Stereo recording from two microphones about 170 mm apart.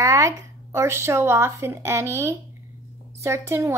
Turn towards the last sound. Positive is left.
turn(degrees=-15)  # may be behind; listen again after turning